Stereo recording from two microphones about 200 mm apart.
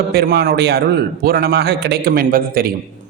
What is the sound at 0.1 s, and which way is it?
A man's voice, 50° right (ahead or behind).